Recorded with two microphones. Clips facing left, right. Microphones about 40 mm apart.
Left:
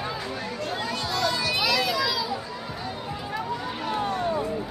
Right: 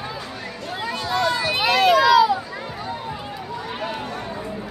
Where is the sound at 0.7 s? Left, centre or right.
Centre.